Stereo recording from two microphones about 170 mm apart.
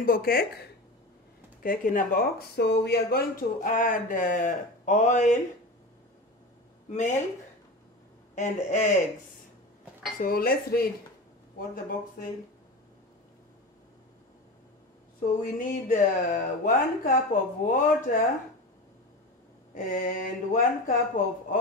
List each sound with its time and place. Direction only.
0.0 s speech: 60° left (ahead or behind)
1.6 s speech: 55° left (ahead or behind)
6.9 s speech: 45° left (ahead or behind)
8.4 s speech: 45° left (ahead or behind)
10.2 s speech: 60° left (ahead or behind)
15.2 s speech: 50° left (ahead or behind)
19.7 s speech: 50° left (ahead or behind)